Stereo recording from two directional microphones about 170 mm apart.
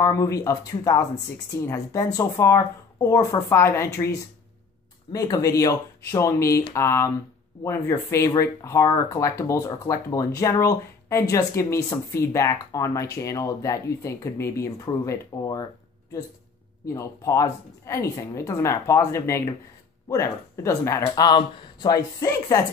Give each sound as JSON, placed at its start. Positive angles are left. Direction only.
{"t": 0.0, "sound": "a woman's voice", "side_deg": 20}
{"t": 16.8, "sound": "a woman's voice", "side_deg": 15}